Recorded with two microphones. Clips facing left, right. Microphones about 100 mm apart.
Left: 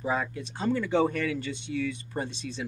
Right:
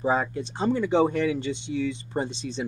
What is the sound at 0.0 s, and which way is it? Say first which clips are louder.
Speech: right 5 dB; 30° right (ahead or behind).